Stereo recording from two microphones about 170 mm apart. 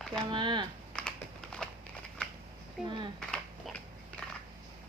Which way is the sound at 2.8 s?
30° right (ahead or behind).